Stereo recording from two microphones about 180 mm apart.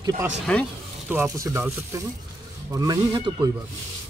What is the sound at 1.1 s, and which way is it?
Speech, 15° right (ahead or behind).